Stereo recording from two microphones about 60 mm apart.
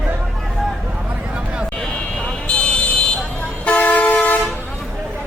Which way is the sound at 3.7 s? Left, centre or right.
Left.